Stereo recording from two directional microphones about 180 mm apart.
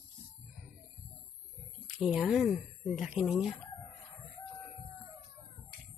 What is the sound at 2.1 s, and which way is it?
Speech, centre (ahead or behind).